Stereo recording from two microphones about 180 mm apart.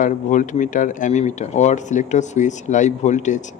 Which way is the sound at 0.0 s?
45° left (ahead or behind).